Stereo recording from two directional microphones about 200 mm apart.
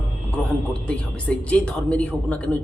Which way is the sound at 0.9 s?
5° left (ahead or behind).